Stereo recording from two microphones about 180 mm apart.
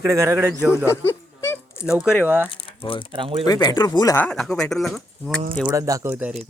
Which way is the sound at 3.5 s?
20° left (ahead or behind).